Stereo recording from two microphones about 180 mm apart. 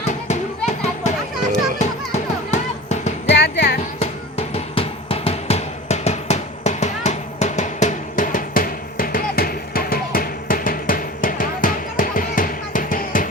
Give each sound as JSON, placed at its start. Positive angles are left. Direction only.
{"t": 0.3, "sound": "children playing", "side_deg": 40}
{"t": 1.8, "sound": "music", "side_deg": 40}
{"t": 3.3, "sound": "music", "side_deg": 70}
{"t": 4.0, "sound": "music", "side_deg": 35}